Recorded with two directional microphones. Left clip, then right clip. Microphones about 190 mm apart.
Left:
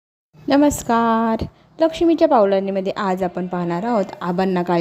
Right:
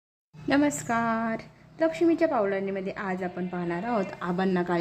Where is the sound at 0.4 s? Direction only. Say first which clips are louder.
Left 9 dB; 25° left (ahead or behind).